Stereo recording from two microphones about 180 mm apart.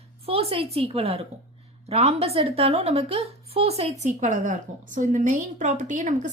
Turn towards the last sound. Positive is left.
turn(degrees=-45)  # may be behind; listen again after turning